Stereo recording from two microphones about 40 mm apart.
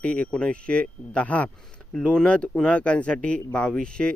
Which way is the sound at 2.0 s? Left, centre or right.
Left.